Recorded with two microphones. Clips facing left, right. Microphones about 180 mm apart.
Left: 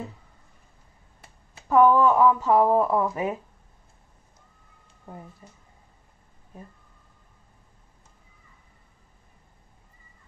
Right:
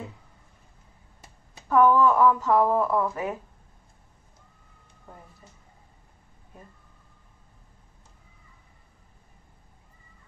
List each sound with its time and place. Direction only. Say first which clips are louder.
1.7 s speech: left 1 dB; 10° left (ahead or behind)